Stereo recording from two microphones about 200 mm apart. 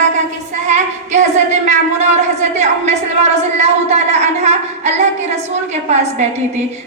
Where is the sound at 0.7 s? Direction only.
35° right (ahead or behind).